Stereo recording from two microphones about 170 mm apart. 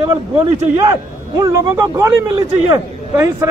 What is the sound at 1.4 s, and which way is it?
Speech, 15° right (ahead or behind).